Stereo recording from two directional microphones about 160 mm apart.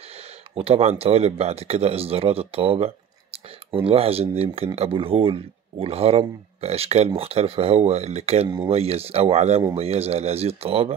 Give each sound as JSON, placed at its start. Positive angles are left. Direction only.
{"t": 0.6, "sound": "speech", "side_deg": -40}